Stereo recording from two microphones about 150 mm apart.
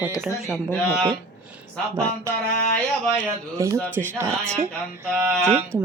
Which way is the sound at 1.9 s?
20° right (ahead or behind).